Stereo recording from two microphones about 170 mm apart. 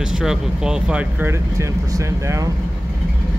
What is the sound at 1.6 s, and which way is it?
Speech, 15° right (ahead or behind).